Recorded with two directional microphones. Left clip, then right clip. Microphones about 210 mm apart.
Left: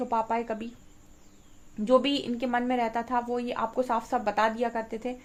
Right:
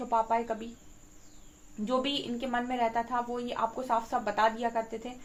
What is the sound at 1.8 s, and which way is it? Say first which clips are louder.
A woman's voice: left 7 dB; 45° left (ahead or behind).